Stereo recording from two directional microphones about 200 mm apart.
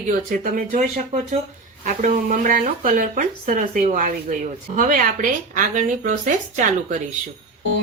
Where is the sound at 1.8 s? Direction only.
40° right (ahead or behind).